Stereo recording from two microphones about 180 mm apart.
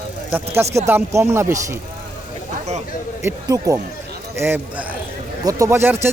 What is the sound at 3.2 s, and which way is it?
Speech, 20° right (ahead or behind).